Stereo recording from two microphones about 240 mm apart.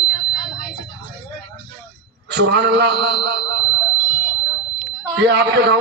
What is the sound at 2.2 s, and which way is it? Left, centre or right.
A man's voice, right.